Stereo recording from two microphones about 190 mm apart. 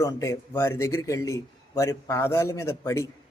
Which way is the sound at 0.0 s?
15° left (ahead or behind).